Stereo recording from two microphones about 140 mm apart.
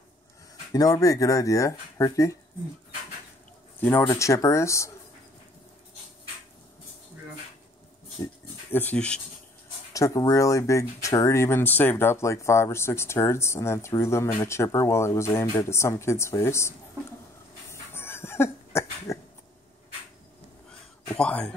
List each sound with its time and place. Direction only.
0.7 s speech: 25° left (ahead or behind)
3.8 s speech: 15° left (ahead or behind)
8.7 s speech: 10° left (ahead or behind)
9.9 s speech: 25° left (ahead or behind)
17.6 s a sound: 15° left (ahead or behind)
21.2 s speech: 10° left (ahead or behind)